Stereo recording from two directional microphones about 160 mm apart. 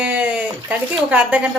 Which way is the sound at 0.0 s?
10° right (ahead or behind).